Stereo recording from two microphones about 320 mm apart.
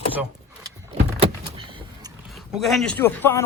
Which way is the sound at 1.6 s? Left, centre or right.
Centre.